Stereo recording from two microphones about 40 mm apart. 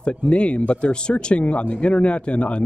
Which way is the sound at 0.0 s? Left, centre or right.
Left.